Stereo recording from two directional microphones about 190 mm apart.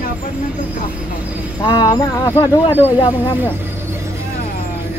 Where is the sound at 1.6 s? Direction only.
20° left (ahead or behind).